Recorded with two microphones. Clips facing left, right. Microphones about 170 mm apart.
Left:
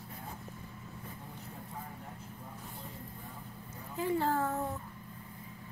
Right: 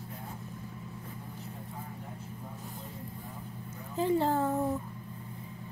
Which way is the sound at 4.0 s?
25° right (ahead or behind).